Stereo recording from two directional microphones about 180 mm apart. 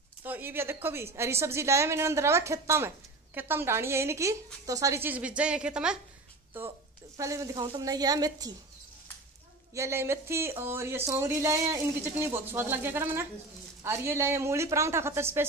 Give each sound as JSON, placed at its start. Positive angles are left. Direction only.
{"t": 0.2, "sound": "a woman's voice", "side_deg": -10}
{"t": 9.8, "sound": "speech", "side_deg": -15}